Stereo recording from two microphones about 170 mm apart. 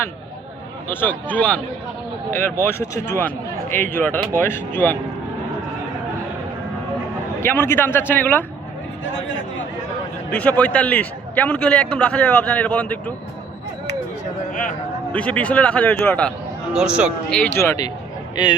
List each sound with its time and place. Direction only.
0.9 s a man's voice: 10° left (ahead or behind)
7.4 s a man's voice: 15° left (ahead or behind)
10.3 s a man's voice: 5° left (ahead or behind)
15.1 s a man's voice: 10° left (ahead or behind)
16.7 s speech: 5° right (ahead or behind)
17.3 s a man's voice: 10° left (ahead or behind)